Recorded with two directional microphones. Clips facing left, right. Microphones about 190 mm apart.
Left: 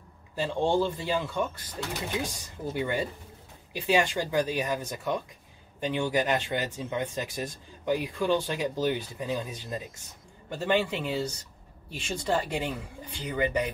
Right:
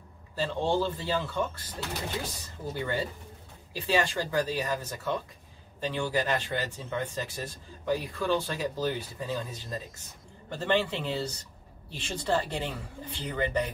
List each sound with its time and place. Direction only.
0.4 s speech: 15° left (ahead or behind)
2.7 s speech: 15° left (ahead or behind)